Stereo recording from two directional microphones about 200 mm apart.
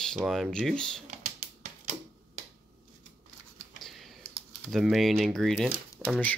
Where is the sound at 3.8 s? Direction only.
Centre (ahead or behind).